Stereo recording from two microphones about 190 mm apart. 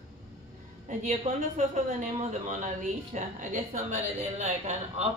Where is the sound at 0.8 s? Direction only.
40° right (ahead or behind).